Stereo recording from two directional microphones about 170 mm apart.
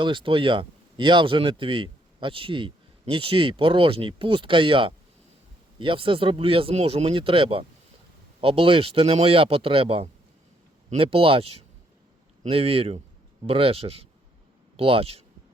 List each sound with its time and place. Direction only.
0.0 s speech: 30° right (ahead or behind)